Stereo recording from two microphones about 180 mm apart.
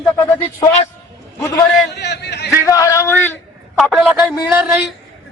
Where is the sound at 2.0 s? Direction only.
70° left (ahead or behind).